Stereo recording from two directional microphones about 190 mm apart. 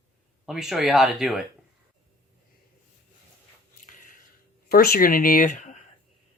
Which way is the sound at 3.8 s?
40° left (ahead or behind).